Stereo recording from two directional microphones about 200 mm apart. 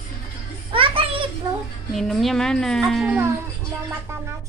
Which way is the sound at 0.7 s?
25° right (ahead or behind).